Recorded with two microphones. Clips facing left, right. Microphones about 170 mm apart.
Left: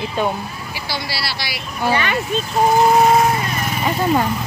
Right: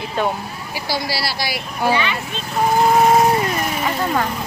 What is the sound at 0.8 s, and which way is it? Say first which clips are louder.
Speech: right 4 dB; 40° right (ahead or behind).